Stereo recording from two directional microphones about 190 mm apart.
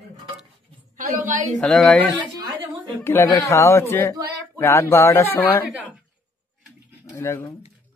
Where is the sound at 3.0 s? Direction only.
10° left (ahead or behind).